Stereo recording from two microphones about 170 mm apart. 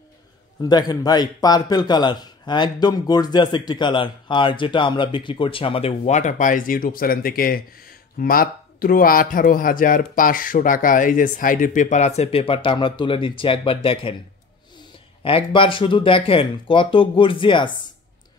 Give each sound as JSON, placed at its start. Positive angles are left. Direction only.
{"t": 0.6, "sound": "a man's voice", "side_deg": 25}
{"t": 15.2, "sound": "a man's voice", "side_deg": 30}